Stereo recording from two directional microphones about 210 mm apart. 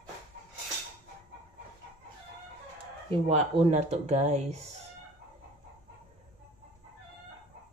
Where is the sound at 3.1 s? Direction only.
30° right (ahead or behind).